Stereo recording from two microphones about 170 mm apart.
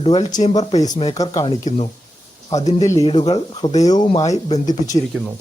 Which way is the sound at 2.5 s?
40° left (ahead or behind).